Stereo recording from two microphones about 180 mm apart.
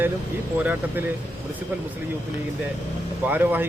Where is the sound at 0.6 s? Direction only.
10° right (ahead or behind).